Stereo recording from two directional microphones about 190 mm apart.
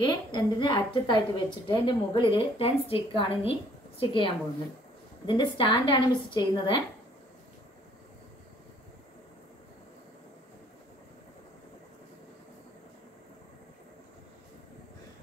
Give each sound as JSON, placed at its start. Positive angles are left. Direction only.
{"t": 0.0, "sound": "a woman's voice", "side_deg": 25}